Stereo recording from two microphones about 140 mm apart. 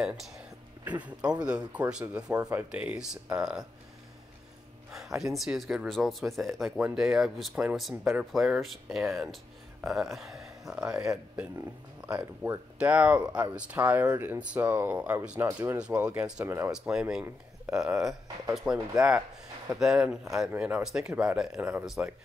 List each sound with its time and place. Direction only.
0.8 s speech: 10° right (ahead or behind)
4.9 s speech: 5° right (ahead or behind)
12.1 s speech: 10° right (ahead or behind)
15.3 s speech: 20° right (ahead or behind)
15.8 s speech: 10° right (ahead or behind)
16.7 s speech: 5° right (ahead or behind)